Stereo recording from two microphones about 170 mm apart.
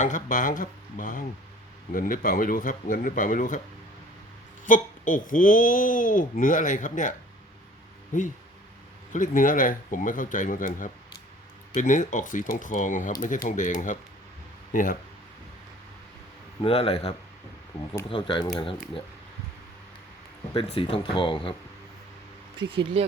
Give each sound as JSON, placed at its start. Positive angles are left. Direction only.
{"t": 0.0, "sound": "speech", "side_deg": 50}
{"t": 4.6, "sound": "speech", "side_deg": 50}
{"t": 8.1, "sound": "speech", "side_deg": 50}
{"t": 16.6, "sound": "speech", "side_deg": 35}
{"t": 20.7, "sound": "speech", "side_deg": 35}
{"t": 22.7, "sound": "speech", "side_deg": -30}